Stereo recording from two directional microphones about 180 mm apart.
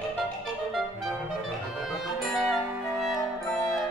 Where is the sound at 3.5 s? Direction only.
15° left (ahead or behind).